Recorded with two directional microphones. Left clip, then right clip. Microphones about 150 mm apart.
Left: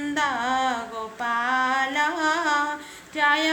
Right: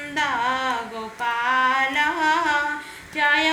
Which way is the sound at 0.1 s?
30° left (ahead or behind).